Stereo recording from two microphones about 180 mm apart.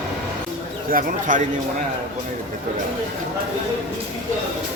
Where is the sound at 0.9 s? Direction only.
45° right (ahead or behind).